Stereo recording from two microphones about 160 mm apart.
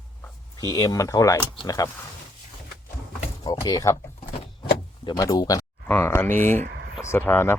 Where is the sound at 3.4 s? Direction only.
25° left (ahead or behind).